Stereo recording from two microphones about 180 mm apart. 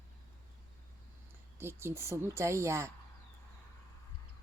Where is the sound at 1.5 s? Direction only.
15° right (ahead or behind).